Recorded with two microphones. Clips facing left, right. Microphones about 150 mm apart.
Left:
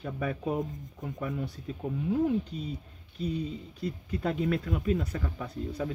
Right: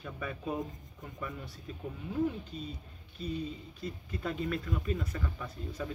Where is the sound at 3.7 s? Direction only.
70° left (ahead or behind).